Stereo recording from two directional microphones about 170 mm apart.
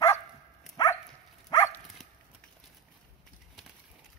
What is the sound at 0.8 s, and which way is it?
Dog, 25° left (ahead or behind).